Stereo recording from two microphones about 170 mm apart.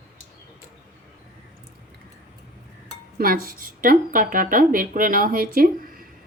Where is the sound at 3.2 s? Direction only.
60° right (ahead or behind).